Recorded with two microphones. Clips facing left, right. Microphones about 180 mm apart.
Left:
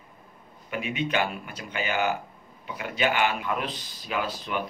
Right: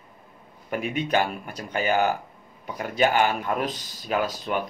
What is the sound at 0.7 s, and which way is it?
Speech, 45° right (ahead or behind).